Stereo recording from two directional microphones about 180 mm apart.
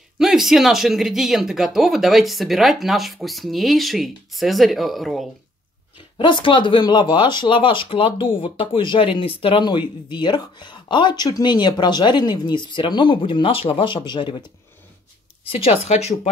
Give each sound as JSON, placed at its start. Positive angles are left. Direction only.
{"t": 0.2, "sound": "speech", "side_deg": 0}
{"t": 6.1, "sound": "speech", "side_deg": 25}
{"t": 15.4, "sound": "speech", "side_deg": 30}